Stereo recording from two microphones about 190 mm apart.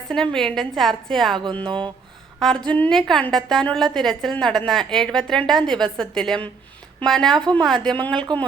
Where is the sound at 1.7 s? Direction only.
25° right (ahead or behind).